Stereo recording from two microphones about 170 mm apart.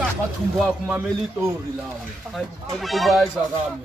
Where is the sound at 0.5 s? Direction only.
5° right (ahead or behind).